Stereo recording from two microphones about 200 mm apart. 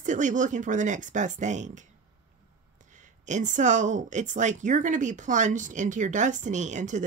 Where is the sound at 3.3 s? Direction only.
40° right (ahead or behind).